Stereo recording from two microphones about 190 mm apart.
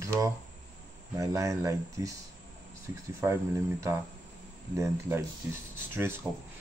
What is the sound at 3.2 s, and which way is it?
Speech, 15° right (ahead or behind).